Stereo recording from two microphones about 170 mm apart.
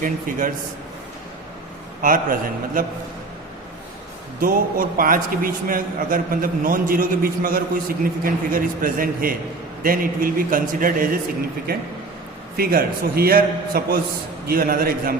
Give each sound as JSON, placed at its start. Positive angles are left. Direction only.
{"t": 0.0, "sound": "a man's voice", "side_deg": -50}
{"t": 2.0, "sound": "a man's voice", "side_deg": -55}
{"t": 4.4, "sound": "a man's voice", "side_deg": -55}
{"t": 12.5, "sound": "a man's voice", "side_deg": -60}